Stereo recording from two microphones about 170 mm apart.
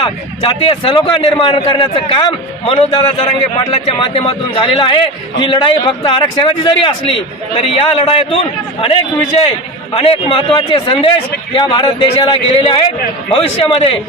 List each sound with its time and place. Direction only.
0.0 s a man's voice: 30° left (ahead or behind)